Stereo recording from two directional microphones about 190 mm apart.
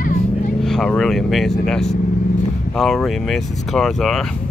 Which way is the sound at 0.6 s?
Centre (ahead or behind).